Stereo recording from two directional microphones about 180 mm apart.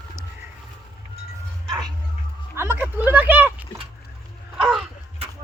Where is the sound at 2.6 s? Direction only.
10° right (ahead or behind).